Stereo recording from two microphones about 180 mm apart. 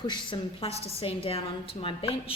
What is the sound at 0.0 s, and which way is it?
A woman's voice, 25° left (ahead or behind).